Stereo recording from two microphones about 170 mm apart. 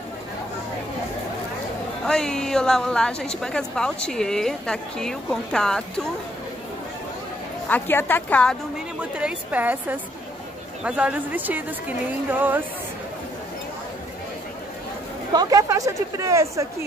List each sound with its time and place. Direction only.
2.0 s a woman's voice: 5° left (ahead or behind)
7.6 s a woman's voice: 10° left (ahead or behind)
8.7 s a woman's voice: 5° right (ahead or behind)
15.3 s speech: 20° right (ahead or behind)